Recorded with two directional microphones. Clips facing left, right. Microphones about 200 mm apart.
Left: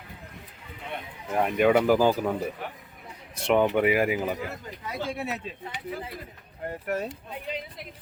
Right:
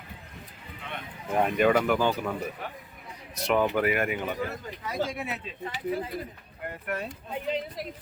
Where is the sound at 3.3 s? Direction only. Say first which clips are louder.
Left 3 dB; 30° left (ahead or behind).